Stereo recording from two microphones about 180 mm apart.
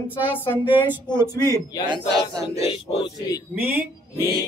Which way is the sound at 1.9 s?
25° right (ahead or behind).